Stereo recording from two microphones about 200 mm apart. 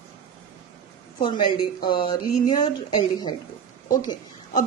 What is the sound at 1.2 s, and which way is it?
Speech, 20° left (ahead or behind).